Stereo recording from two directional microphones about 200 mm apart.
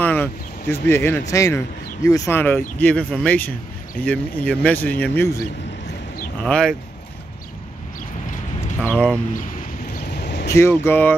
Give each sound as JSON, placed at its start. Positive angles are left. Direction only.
{"t": 0.0, "sound": "a sound", "side_deg": 10}
{"t": 0.8, "sound": "speech", "side_deg": 10}
{"t": 6.4, "sound": "speech", "side_deg": 5}
{"t": 8.8, "sound": "speech", "side_deg": 5}
{"t": 9.9, "sound": "a sound", "side_deg": 55}
{"t": 10.5, "sound": "speech", "side_deg": 15}